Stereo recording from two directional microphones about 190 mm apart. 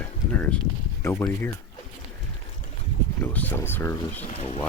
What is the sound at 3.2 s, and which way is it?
Speech, 10° left (ahead or behind).